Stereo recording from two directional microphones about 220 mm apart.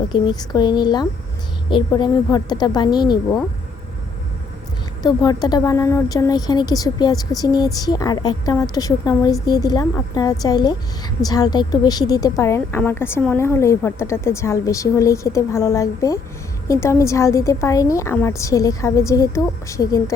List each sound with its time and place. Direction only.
0.1 s a woman's voice: 20° left (ahead or behind)
5.0 s speech: 15° left (ahead or behind)